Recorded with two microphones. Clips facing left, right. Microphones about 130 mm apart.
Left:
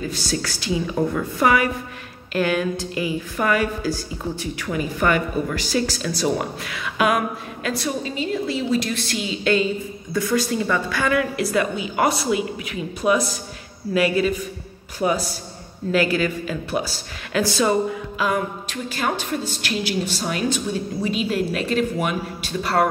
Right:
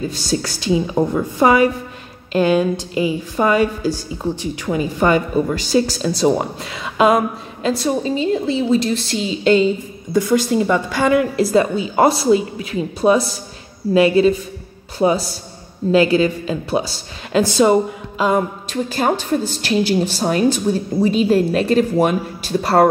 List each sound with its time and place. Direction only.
0.1 s a woman's voice: 25° right (ahead or behind); by 22.8 s 40° right (ahead or behind)